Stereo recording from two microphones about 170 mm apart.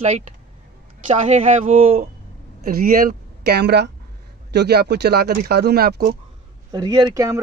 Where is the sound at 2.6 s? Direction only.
60° right (ahead or behind).